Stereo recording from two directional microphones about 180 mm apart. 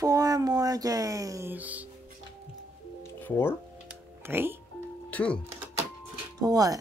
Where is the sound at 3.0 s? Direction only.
10° left (ahead or behind).